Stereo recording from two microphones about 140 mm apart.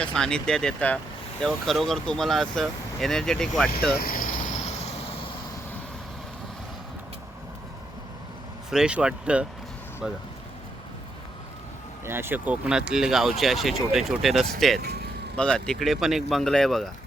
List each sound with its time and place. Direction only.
0.0 s speech: 5° left (ahead or behind)
3.9 s vehicle: 85° left
4.6 s vehicle: 50° left (ahead or behind)
8.7 s speech: 5° right (ahead or behind)
12.0 s speech: 15° right (ahead or behind); by 16.9 s 5° left (ahead or behind)